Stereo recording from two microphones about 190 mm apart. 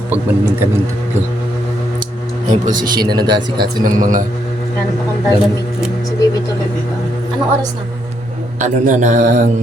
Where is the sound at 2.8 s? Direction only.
20° right (ahead or behind).